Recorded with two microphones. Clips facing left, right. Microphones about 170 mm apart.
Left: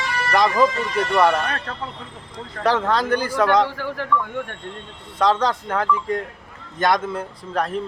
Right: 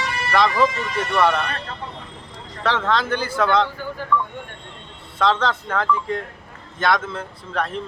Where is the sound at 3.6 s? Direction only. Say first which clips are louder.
Left 1 dB; 80° left.